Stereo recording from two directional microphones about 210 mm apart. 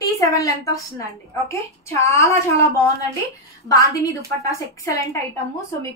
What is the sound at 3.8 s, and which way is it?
A woman's voice, 15° left (ahead or behind).